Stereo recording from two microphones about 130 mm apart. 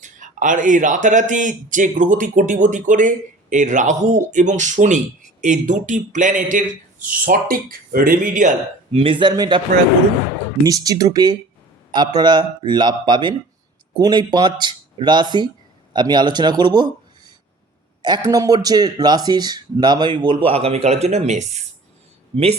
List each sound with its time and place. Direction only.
0.0 s a man's voice: 75° right (ahead or behind)
8.9 s speech: 45° right (ahead or behind)
10.6 s a man's voice: 30° right (ahead or behind); by 21.6 s 60° right (ahead or behind)
22.3 s a man's voice: 45° right (ahead or behind)